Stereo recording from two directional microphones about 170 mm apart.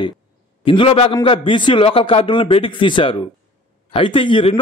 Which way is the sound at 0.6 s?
30° left (ahead or behind).